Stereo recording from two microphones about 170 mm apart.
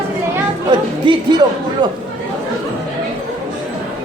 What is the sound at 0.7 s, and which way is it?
Speech, 25° right (ahead or behind).